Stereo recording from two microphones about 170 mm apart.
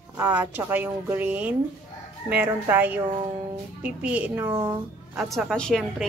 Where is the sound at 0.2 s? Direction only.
10° right (ahead or behind).